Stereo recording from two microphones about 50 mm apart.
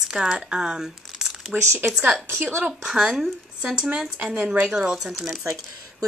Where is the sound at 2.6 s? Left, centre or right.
Centre.